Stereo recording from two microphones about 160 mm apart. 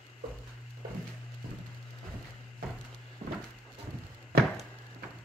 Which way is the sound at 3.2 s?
40° right (ahead or behind).